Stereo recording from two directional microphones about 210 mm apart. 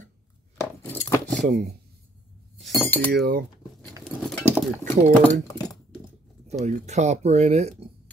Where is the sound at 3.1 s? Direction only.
50° right (ahead or behind).